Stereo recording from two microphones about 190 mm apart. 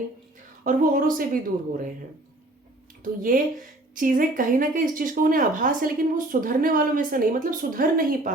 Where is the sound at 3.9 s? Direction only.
45° right (ahead or behind).